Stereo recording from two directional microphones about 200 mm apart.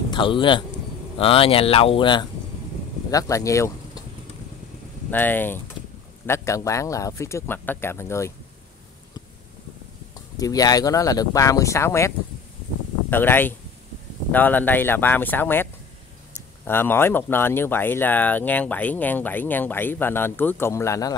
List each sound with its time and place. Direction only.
0.1 s speech: 25° left (ahead or behind)
5.1 s speech: 10° left (ahead or behind)
10.1 s speech: 20° left (ahead or behind)
13.1 s speech: 10° left (ahead or behind)